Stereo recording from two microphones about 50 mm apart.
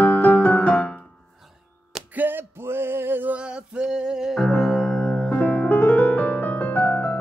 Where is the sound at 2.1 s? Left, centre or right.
Right.